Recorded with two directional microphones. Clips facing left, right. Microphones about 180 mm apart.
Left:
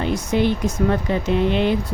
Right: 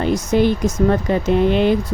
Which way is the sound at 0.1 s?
40° right (ahead or behind).